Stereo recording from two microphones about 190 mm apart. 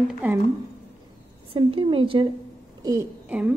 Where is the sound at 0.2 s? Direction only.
10° right (ahead or behind).